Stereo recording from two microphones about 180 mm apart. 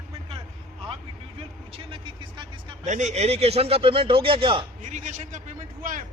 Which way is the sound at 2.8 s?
40° right (ahead or behind).